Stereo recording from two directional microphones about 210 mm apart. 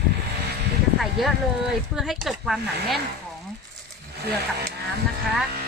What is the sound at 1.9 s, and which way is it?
Speech, centre (ahead or behind).